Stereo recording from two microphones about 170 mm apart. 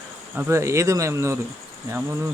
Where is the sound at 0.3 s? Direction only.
15° right (ahead or behind).